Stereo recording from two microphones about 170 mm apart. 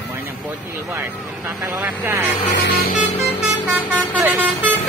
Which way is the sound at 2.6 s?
65° left (ahead or behind).